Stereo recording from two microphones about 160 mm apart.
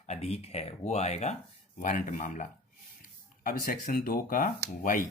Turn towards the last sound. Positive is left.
turn(degrees=55)  # may be behind; listen again after turning